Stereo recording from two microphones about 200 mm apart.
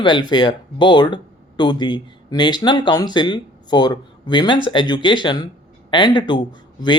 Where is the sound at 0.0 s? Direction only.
20° left (ahead or behind).